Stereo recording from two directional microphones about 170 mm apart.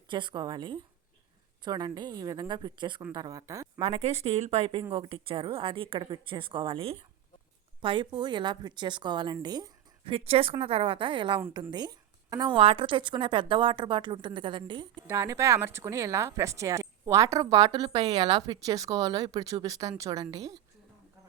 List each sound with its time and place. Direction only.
0.1 s speech: 30° right (ahead or behind)
3.8 s speech: 35° right (ahead or behind)
15.0 s speech: 15° right (ahead or behind)